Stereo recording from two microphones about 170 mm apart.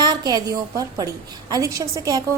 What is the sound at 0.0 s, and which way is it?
A woman's voice, 25° right (ahead or behind).